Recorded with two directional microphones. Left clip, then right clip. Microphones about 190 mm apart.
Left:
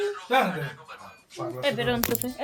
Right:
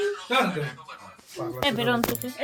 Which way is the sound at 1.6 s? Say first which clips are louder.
Right 2 dB; 5° right (ahead or behind).